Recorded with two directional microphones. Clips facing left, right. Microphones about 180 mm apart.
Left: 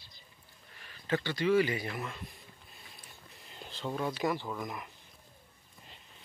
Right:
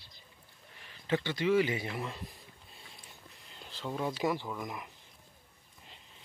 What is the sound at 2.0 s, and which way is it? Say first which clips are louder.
Speech: right 1 dB; 30° right (ahead or behind).